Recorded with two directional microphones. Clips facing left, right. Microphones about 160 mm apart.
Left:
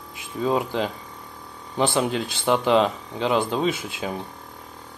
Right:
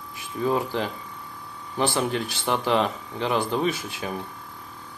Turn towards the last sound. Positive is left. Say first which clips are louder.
# left 2 dB
turn(degrees=20)  # may be behind; listen again after turning